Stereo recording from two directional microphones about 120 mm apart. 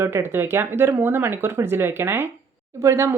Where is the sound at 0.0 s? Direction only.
20° right (ahead or behind).